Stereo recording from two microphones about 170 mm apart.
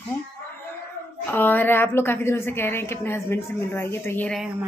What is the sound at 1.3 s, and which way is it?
A woman's voice, 10° left (ahead or behind).